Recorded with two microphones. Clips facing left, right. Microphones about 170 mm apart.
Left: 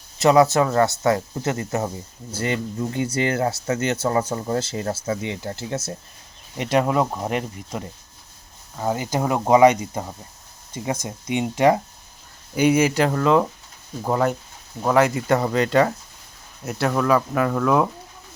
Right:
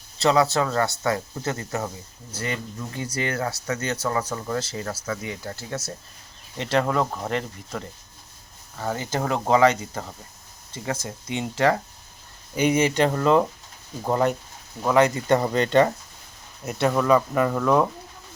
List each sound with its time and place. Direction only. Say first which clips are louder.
0.2 s speech: left 5 dB; 20° left (ahead or behind)
12.5 s speech: left 3 dB; 5° left (ahead or behind)